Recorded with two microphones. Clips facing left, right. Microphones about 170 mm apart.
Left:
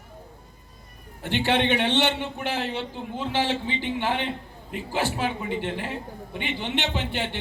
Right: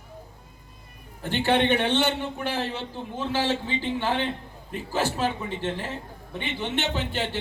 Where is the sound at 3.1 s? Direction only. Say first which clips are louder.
Even; 20° left (ahead or behind).